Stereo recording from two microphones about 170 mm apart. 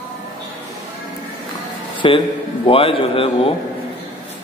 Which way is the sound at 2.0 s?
30° left (ahead or behind).